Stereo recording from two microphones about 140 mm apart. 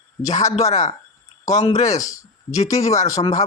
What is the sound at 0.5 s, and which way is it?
Speech, 55° left (ahead or behind).